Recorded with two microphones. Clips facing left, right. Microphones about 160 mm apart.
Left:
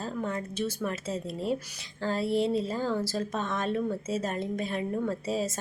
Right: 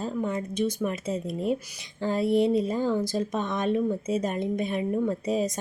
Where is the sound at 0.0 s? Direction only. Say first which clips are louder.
Right 4 dB; 15° right (ahead or behind).